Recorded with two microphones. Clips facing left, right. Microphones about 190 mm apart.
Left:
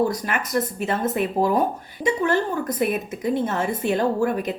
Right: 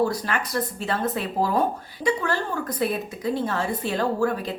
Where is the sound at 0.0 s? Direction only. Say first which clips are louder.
Left 1 dB; 20° left (ahead or behind).